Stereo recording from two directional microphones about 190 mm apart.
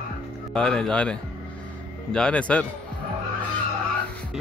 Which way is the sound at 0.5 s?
5° left (ahead or behind).